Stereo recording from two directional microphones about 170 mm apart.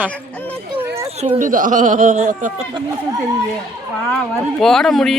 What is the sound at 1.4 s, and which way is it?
Speech, 50° right (ahead or behind).